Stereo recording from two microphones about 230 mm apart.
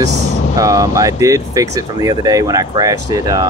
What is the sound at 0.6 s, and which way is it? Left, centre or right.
Speech, centre.